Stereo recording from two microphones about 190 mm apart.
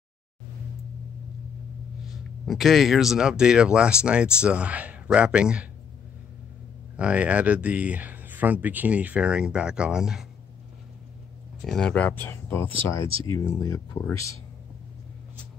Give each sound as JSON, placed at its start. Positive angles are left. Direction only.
{"t": 2.4, "sound": "speech", "side_deg": 0}
{"t": 7.0, "sound": "speech", "side_deg": -5}
{"t": 11.6, "sound": "speech", "side_deg": 5}